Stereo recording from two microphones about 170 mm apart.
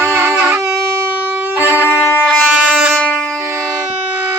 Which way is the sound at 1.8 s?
15° left (ahead or behind).